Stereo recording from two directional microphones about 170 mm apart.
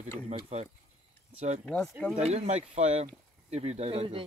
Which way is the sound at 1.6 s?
15° left (ahead or behind).